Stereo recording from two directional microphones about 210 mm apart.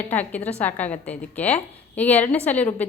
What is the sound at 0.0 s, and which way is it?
A woman's voice, 5° left (ahead or behind).